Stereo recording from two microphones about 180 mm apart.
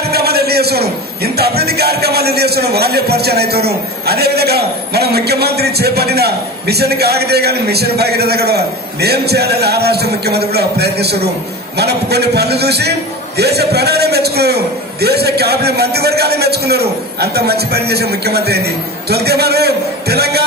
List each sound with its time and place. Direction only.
0.1 s a man's voice: 60° right (ahead or behind)